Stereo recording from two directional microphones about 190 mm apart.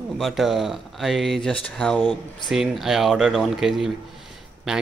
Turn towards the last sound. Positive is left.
turn(degrees=0)  # may be behind; listen again after turning